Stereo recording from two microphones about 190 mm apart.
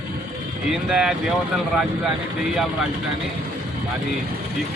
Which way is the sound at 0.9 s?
5° right (ahead or behind).